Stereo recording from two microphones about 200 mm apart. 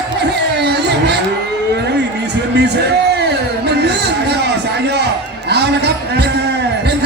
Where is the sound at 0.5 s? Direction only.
55° right (ahead or behind).